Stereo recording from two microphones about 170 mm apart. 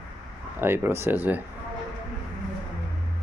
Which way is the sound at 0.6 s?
15° right (ahead or behind).